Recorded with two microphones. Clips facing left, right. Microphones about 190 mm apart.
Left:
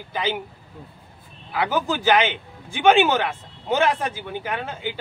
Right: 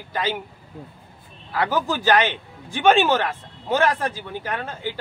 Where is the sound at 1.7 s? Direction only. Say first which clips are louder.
Even; 20° left (ahead or behind).